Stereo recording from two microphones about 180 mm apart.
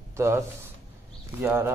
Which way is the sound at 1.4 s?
15° right (ahead or behind).